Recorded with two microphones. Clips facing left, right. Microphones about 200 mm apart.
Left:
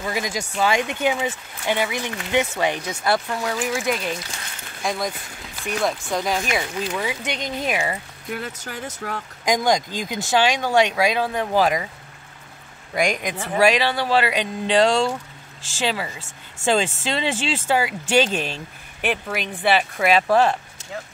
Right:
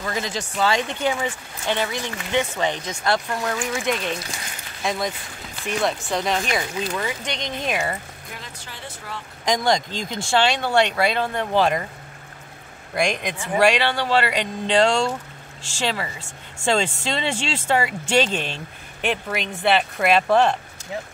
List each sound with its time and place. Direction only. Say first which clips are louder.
0.0 s speech: left 1 dB; 10° left (ahead or behind)
9.0 s speech: left 6 dB; 60° left (ahead or behind)
9.4 s speech: left 1 dB; 10° left (ahead or behind)
12.9 s speech: left 1 dB; 10° left (ahead or behind)